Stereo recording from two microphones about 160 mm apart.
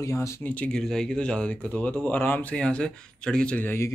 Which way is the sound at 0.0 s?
20° left (ahead or behind).